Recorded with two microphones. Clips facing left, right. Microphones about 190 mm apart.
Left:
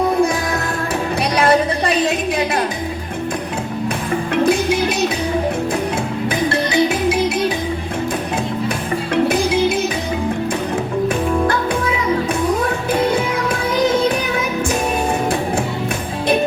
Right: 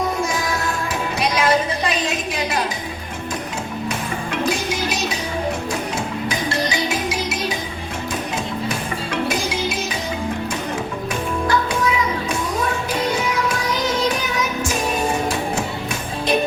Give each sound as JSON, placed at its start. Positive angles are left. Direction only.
{"t": 2.0, "sound": "a sound", "side_deg": 55}
{"t": 4.4, "sound": "music", "side_deg": 55}
{"t": 6.2, "sound": "music", "side_deg": 60}
{"t": 9.3, "sound": "music", "side_deg": 55}